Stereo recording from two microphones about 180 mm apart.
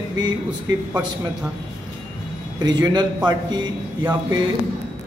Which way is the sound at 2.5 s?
25° right (ahead or behind).